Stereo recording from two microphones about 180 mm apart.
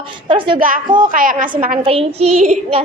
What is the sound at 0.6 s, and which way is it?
A woman's voice, 50° right (ahead or behind).